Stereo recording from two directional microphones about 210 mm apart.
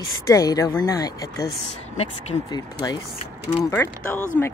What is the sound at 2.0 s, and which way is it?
Speech, 30° left (ahead or behind).